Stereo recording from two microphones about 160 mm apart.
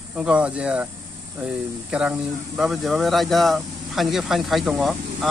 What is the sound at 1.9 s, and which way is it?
A man's voice, 5° right (ahead or behind).